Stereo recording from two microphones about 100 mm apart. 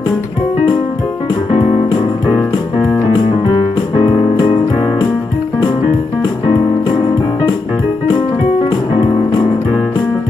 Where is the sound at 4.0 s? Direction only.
65° left (ahead or behind).